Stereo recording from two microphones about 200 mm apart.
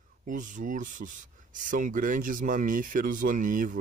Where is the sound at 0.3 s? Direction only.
40° right (ahead or behind).